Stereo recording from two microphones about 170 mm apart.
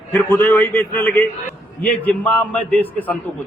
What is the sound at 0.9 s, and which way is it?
A man's voice, 15° left (ahead or behind).